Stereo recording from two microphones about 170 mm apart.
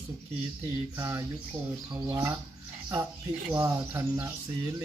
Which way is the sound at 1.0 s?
15° right (ahead or behind).